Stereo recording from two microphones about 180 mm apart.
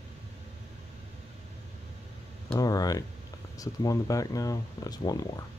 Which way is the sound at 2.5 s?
20° left (ahead or behind).